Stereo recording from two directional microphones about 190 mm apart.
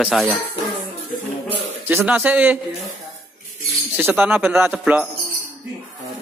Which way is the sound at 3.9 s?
5° right (ahead or behind).